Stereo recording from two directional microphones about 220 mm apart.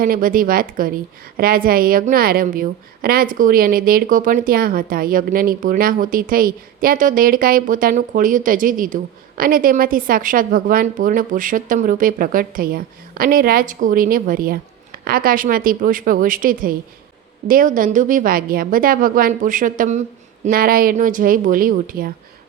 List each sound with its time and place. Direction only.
0.0 s a woman's voice: 40° right (ahead or behind)